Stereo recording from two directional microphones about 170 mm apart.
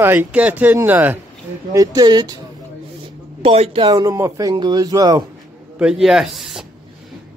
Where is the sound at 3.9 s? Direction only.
20° right (ahead or behind).